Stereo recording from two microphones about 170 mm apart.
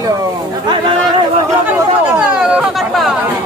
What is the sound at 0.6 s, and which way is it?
Speech, 25° right (ahead or behind).